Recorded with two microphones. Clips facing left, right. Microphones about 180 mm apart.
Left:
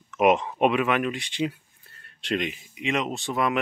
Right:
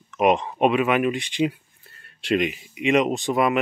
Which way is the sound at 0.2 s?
5° left (ahead or behind).